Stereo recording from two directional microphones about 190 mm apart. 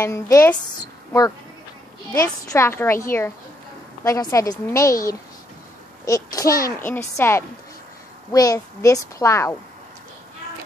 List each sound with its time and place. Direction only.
0.0 s a child's voice: 15° left (ahead or behind)
2.1 s a child's voice: 15° left (ahead or behind)